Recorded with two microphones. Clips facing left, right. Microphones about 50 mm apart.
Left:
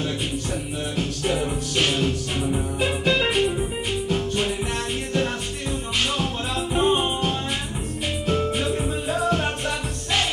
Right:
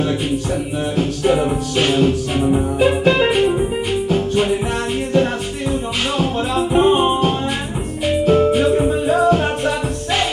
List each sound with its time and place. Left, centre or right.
0.9 s music: centre